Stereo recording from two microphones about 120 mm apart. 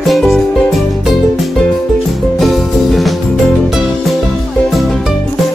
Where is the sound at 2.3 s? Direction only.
Centre (ahead or behind).